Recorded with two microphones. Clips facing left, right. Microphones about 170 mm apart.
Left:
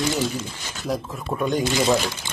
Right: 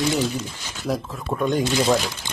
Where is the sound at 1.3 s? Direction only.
5° left (ahead or behind).